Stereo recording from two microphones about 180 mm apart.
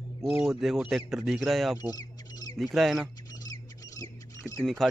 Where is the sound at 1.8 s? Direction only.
20° left (ahead or behind).